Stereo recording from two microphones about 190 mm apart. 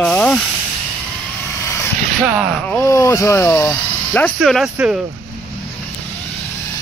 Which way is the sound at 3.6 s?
5° left (ahead or behind).